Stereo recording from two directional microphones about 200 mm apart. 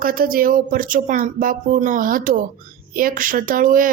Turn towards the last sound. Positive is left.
turn(degrees=-45)  # may be behind; listen again after turning